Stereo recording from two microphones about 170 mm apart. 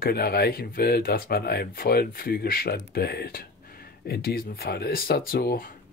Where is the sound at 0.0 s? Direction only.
70° left (ahead or behind).